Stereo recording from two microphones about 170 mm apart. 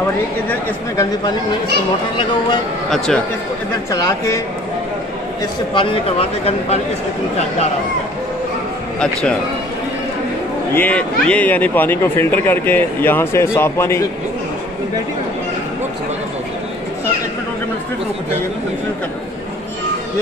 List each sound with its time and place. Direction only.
3.9 s speech: 20° left (ahead or behind)
5.8 s speech: 35° left (ahead or behind)
10.7 s speech: 10° left (ahead or behind)